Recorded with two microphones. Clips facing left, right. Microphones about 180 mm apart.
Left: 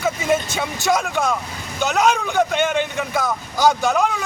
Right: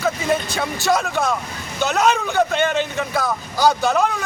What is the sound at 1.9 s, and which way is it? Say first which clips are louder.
Speech: even; centre (ahead or behind).